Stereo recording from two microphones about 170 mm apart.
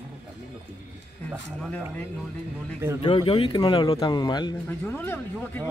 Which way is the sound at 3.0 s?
30° left (ahead or behind).